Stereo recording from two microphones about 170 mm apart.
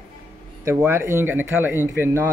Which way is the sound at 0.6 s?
15° right (ahead or behind).